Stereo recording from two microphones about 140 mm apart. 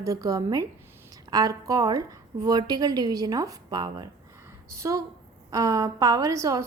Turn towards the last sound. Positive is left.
turn(degrees=-20)  # may be behind; listen again after turning